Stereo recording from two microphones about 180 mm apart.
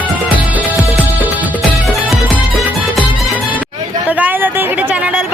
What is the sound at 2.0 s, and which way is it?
Music, centre (ahead or behind).